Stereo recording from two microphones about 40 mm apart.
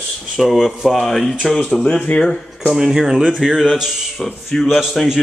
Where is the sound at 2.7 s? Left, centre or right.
Centre.